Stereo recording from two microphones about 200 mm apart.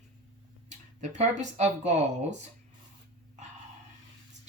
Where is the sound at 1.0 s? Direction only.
35° right (ahead or behind).